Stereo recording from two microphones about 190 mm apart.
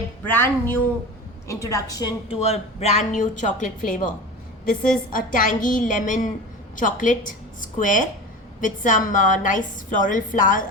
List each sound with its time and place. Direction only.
0.3 s a woman's voice: 10° left (ahead or behind)
2.3 s a woman's voice: 35° left (ahead or behind)